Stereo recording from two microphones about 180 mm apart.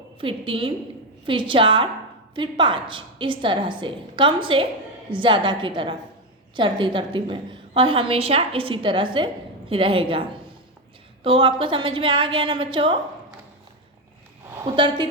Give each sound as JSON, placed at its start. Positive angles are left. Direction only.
{"t": 0.2, "sound": "a woman's voice", "side_deg": -30}
{"t": 14.5, "sound": "a woman's voice", "side_deg": -25}